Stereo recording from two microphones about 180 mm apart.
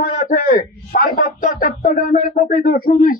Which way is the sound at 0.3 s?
45° left (ahead or behind).